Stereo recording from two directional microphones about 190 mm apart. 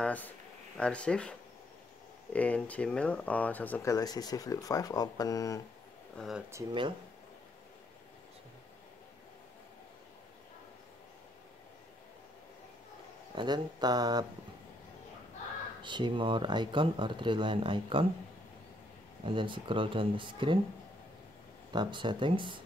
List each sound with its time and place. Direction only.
0.0 s speech: 10° left (ahead or behind)
2.3 s speech: 5° left (ahead or behind)
6.1 s speech: centre (ahead or behind)
6.5 s speech: 25° right (ahead or behind)
13.3 s speech: 25° right (ahead or behind)
15.8 s speech: 25° right (ahead or behind)
19.2 s speech: 25° right (ahead or behind)
21.7 s speech: 25° right (ahead or behind)